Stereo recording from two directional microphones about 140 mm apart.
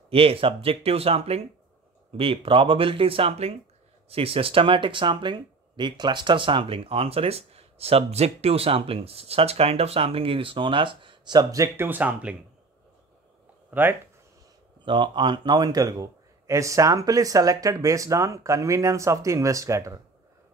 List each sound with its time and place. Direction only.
0.1 s speech: 40° right (ahead or behind); by 12.4 s 10° right (ahead or behind)
13.7 s speech: 15° right (ahead or behind)
14.9 s speech: 35° right (ahead or behind)